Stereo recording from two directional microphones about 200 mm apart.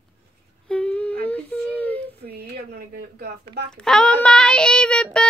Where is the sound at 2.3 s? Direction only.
50° right (ahead or behind).